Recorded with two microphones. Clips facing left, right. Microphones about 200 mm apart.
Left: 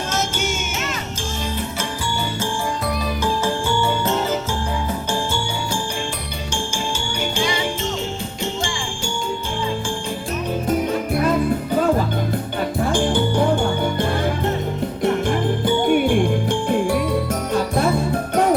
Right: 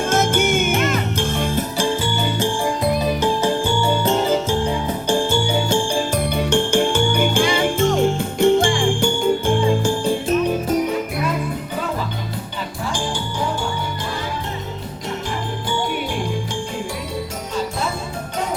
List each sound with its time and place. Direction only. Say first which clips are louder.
0.1 s music: right 8 dB; 55° right (ahead or behind)
5.0 s music: right 5 dB; 15° right (ahead or behind)
6.5 s jingle bell: right 8 dB; 60° right (ahead or behind)
12.9 s music: left 7 dB; 55° left (ahead or behind)
15.0 s jingle bell: left 8 dB; 55° left (ahead or behind)